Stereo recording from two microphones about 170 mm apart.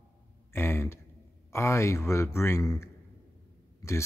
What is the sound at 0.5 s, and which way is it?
Speech, 15° left (ahead or behind).